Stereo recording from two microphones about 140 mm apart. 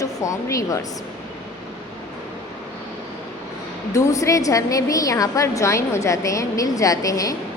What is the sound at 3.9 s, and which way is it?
A woman's voice, 20° left (ahead or behind).